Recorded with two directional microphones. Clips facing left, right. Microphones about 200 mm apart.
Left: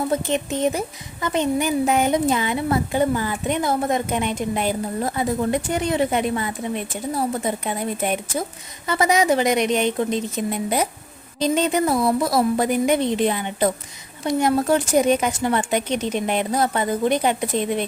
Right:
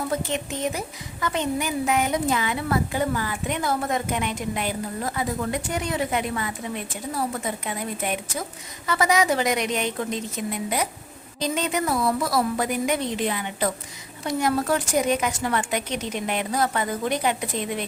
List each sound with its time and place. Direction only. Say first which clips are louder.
1.2 s a woman's voice: left 5 dB; 20° left (ahead or behind)